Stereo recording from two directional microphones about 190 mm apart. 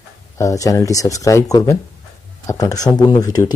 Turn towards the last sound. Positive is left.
turn(degrees=20)  # may be behind; listen again after turning